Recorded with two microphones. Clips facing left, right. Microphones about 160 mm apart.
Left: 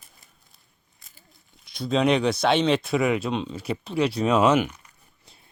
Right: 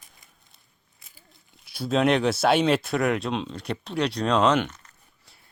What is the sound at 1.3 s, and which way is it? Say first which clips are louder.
Speech: even; 5° right (ahead or behind).